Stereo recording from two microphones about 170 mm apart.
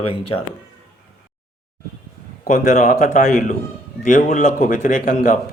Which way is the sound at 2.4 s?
60° left (ahead or behind).